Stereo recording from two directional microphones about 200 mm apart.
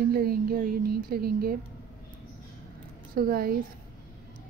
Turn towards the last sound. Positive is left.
turn(degrees=-45)  # may be behind; listen again after turning